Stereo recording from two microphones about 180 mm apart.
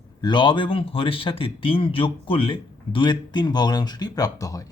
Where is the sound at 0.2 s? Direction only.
25° left (ahead or behind).